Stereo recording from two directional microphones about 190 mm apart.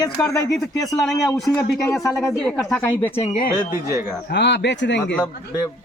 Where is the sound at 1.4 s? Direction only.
20° left (ahead or behind).